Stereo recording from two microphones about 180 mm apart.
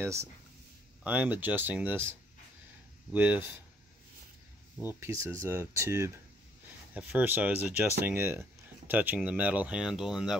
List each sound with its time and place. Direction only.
0.0 s speech: 15° right (ahead or behind)
4.8 s speech: 15° right (ahead or behind)